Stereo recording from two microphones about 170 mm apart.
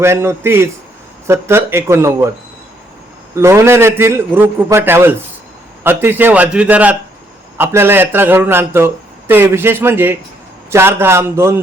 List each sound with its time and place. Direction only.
0.0 s speech: 15° right (ahead or behind)
3.3 s speech: 15° right (ahead or behind)